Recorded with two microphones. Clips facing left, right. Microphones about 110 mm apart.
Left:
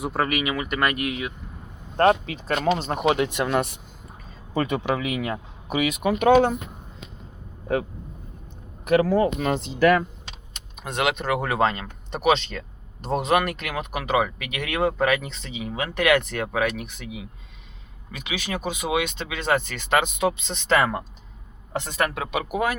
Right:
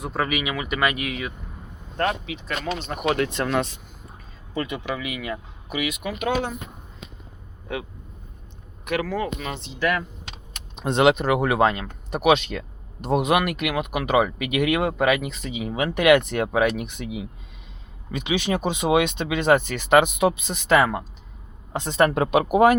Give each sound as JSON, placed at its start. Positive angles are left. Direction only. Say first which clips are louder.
{"t": 0.0, "sound": "speech", "louder": "left 1 dB", "side_deg": 5}
{"t": 2.0, "sound": "speech", "louder": "left 6 dB", "side_deg": 40}
{"t": 3.0, "sound": "speech", "louder": "left 1 dB", "side_deg": 20}
{"t": 4.6, "sound": "speech", "louder": "left 5 dB", "side_deg": 45}
{"t": 8.8, "sound": "speech", "louder": "left 6 dB", "side_deg": 40}
{"t": 10.8, "sound": "speech", "louder": "right 7 dB", "side_deg": -25}
{"t": 22.2, "sound": "speech", "louder": "right 8 dB", "side_deg": -50}